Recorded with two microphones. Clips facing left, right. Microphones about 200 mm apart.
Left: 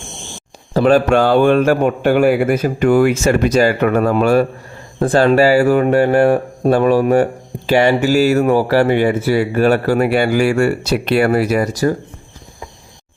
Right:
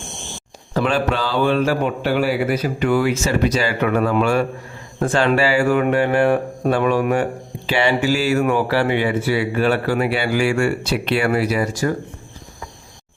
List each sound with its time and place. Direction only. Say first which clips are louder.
0.7 s speech: left 8 dB; 35° left (ahead or behind)